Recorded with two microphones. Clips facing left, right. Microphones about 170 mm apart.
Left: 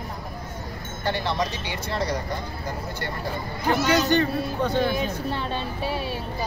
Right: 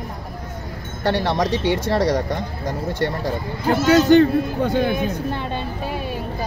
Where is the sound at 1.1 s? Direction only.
80° right.